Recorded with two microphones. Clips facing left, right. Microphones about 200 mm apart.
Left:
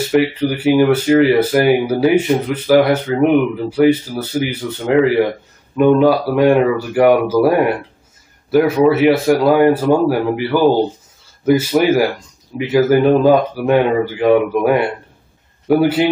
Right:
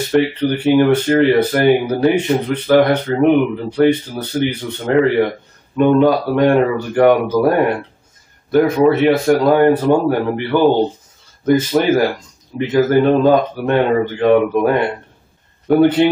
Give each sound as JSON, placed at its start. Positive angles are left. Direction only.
{"t": 0.1, "sound": "speech", "side_deg": 5}